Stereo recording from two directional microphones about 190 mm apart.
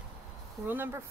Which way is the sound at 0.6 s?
10° right (ahead or behind).